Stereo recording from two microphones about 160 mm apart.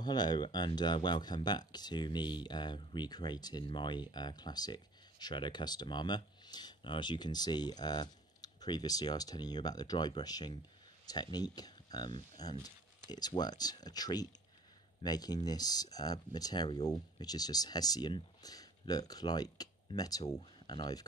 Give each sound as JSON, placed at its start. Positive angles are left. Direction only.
{"t": 0.0, "sound": "speech", "side_deg": 25}